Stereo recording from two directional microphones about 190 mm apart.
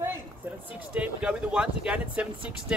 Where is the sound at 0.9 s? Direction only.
5° right (ahead or behind).